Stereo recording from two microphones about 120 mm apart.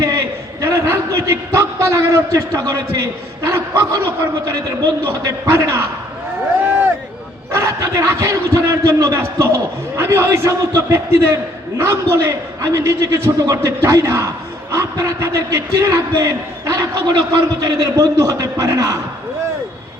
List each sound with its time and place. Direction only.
0.0 s a sound: 25° right (ahead or behind)
2.6 s a man's voice: 30° right (ahead or behind)
5.2 s a man's voice: 20° right (ahead or behind)
7.5 s a man's voice: 25° right (ahead or behind)